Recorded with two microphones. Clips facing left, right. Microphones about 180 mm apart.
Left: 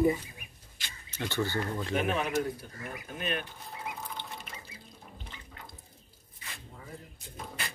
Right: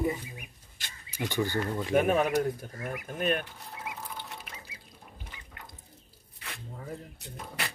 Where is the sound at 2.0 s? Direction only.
50° right (ahead or behind).